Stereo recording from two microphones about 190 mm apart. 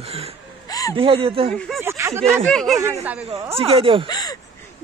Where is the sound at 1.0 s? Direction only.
30° right (ahead or behind).